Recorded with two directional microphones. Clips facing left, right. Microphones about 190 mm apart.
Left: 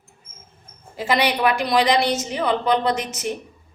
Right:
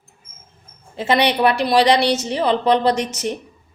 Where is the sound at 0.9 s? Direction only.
25° right (ahead or behind).